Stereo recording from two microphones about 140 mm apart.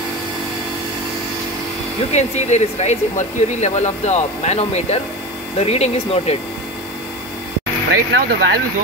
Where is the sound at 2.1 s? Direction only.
55° left (ahead or behind).